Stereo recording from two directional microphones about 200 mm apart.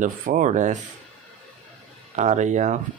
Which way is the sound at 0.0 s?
40° right (ahead or behind).